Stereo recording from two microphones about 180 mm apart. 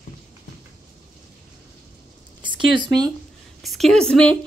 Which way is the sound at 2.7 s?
20° right (ahead or behind).